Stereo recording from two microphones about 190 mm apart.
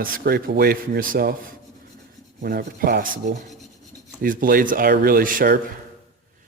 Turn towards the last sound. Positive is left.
turn(degrees=-45)  # may be behind; listen again after turning